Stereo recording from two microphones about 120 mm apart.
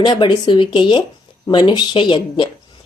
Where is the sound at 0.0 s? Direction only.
40° left (ahead or behind).